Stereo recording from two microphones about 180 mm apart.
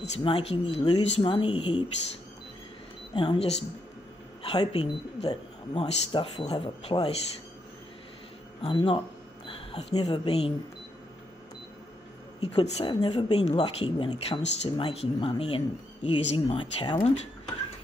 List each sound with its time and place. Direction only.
0.2 s speech: 30° left (ahead or behind)
3.2 s speech: 30° left (ahead or behind)
8.6 s speech: 30° left (ahead or behind)
9.7 s a sound: 35° left (ahead or behind)
9.9 s speech: 25° left (ahead or behind)
12.4 s speech: 30° left (ahead or behind)